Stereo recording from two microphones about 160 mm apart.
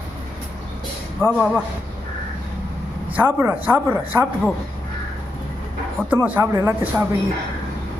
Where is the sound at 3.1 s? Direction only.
10° right (ahead or behind).